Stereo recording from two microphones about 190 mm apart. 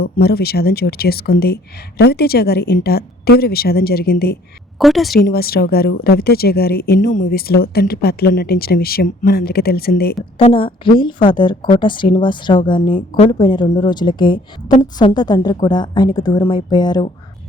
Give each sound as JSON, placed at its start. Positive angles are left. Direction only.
{"t": 0.0, "sound": "a woman's voice", "side_deg": 55}
{"t": 4.8, "sound": "a woman's voice", "side_deg": 0}
{"t": 5.1, "sound": "speech", "side_deg": 55}
{"t": 10.3, "sound": "a woman's voice", "side_deg": 30}